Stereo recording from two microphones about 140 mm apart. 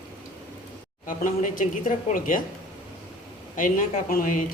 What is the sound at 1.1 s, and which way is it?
Speech, 70° left (ahead or behind).